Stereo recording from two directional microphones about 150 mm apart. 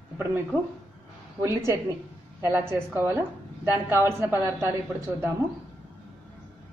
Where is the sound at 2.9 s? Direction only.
15° right (ahead or behind).